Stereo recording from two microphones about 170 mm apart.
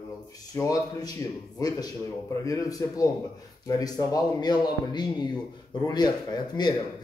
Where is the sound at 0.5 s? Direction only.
20° left (ahead or behind).